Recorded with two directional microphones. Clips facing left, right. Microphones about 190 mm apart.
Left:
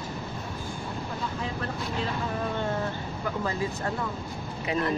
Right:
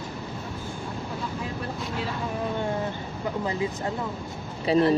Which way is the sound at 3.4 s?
20° right (ahead or behind).